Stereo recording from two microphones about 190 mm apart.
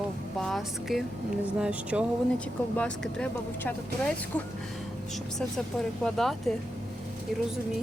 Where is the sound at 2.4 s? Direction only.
5° left (ahead or behind).